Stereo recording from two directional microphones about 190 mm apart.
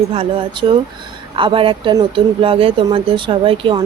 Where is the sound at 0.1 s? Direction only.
30° right (ahead or behind).